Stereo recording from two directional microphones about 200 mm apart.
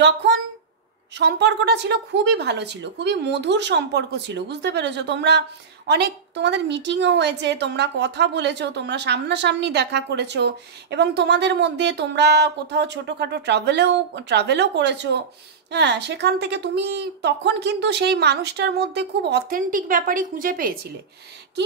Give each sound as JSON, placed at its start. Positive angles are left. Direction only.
{"t": 0.0, "sound": "a woman's voice", "side_deg": -60}